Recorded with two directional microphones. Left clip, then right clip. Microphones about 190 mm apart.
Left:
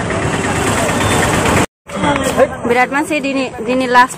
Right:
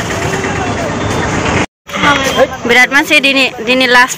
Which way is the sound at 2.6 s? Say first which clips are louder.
Right 5 dB; 5° right (ahead or behind).